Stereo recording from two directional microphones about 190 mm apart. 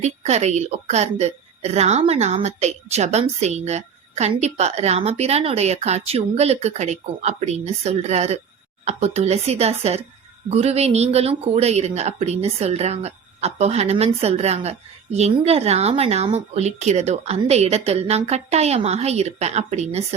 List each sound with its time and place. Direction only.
0.0 s a woman's voice: 35° right (ahead or behind)